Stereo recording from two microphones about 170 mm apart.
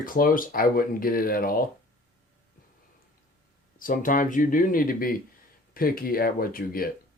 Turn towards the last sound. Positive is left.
turn(degrees=60)  # may be behind; listen again after turning